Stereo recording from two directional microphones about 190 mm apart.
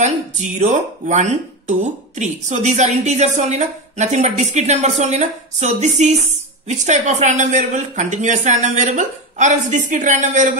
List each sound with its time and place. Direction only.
0.6 s speech: 40° right (ahead or behind)